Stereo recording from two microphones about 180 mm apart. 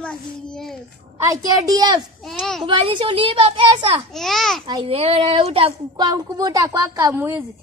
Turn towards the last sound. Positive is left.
turn(degrees=-10)  # may be behind; listen again after turning